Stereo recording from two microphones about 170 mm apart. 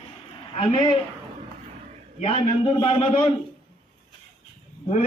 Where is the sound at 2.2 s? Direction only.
30° left (ahead or behind).